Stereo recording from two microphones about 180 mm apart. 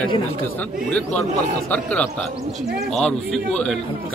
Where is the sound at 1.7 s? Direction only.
10° left (ahead or behind).